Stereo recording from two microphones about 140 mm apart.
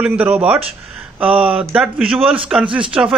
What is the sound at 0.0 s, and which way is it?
A man's voice, 10° right (ahead or behind).